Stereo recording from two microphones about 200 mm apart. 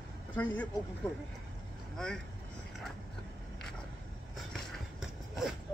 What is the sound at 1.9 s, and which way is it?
Speech, 5° left (ahead or behind).